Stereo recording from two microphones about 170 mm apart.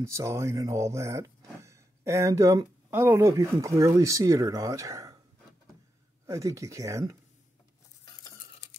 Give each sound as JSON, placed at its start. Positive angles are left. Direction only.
{"t": 0.0, "sound": "speech", "side_deg": -15}
{"t": 6.2, "sound": "speech", "side_deg": -15}